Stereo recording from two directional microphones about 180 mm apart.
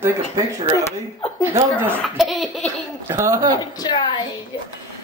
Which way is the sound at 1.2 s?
30° left (ahead or behind).